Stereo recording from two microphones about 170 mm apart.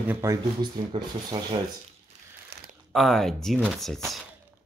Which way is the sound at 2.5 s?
75° right (ahead or behind).